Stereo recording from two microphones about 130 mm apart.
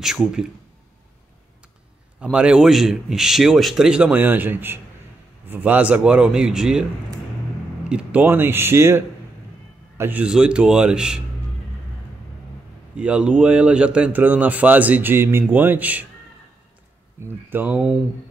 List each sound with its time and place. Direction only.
0.0 s a man's voice: 5° right (ahead or behind)
2.3 s a man's voice: 5° right (ahead or behind)
7.9 s speech: 10° right (ahead or behind)
12.9 s speech: 10° right (ahead or behind)
17.2 s speech: 15° right (ahead or behind)